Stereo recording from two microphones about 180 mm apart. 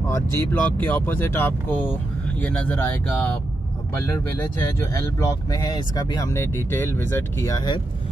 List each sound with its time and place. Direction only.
0.1 s speech: 10° left (ahead or behind)